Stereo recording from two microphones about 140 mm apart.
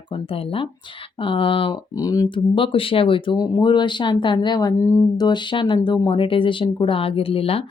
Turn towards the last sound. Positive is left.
turn(degrees=45)  # may be behind; listen again after turning